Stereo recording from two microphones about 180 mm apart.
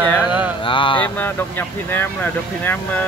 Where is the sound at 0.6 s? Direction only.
30° left (ahead or behind).